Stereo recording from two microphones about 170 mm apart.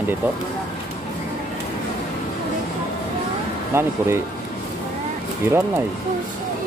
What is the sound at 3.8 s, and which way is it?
Speech, 15° right (ahead or behind).